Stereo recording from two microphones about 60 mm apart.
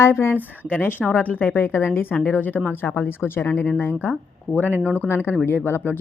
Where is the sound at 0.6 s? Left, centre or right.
Left.